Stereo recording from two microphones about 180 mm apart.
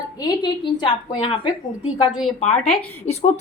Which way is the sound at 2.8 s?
35° left (ahead or behind).